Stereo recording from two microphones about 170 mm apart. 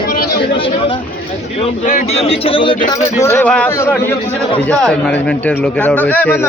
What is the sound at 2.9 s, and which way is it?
A man's voice, 20° left (ahead or behind).